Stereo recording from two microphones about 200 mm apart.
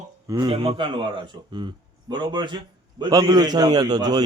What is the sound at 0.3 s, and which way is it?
A man's voice, 20° right (ahead or behind).